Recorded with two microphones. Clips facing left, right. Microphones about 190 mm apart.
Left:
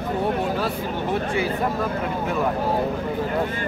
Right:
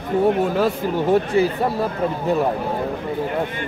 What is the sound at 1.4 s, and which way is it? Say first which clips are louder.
Speech: right 7 dB; 40° right (ahead or behind).